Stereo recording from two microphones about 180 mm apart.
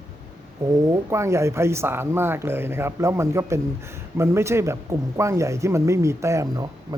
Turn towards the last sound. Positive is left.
turn(degrees=-20)  # may be behind; listen again after turning